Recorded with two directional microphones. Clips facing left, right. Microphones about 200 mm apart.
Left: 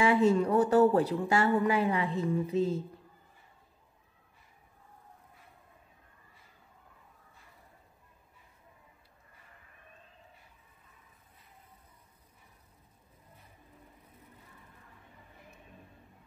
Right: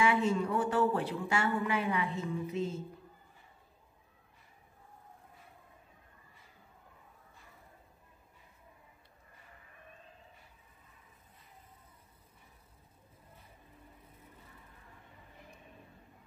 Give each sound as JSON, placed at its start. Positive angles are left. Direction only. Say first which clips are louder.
{"t": 0.0, "sound": "speech", "louder": "left 5 dB", "side_deg": 35}